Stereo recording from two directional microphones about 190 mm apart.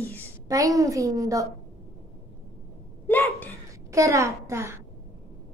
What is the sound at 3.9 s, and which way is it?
Speech, 15° right (ahead or behind).